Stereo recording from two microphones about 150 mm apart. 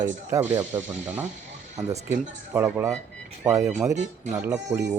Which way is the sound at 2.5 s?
15° right (ahead or behind).